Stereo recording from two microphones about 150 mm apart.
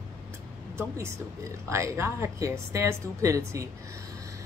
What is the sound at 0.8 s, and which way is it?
A woman's voice, 20° right (ahead or behind).